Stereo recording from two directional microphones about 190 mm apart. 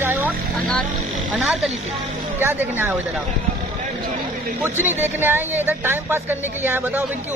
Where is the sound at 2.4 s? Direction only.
10° right (ahead or behind).